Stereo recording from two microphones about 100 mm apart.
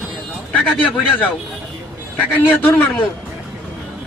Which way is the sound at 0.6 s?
15° left (ahead or behind).